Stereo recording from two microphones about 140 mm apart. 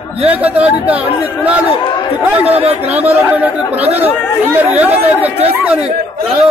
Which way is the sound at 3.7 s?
50° right (ahead or behind).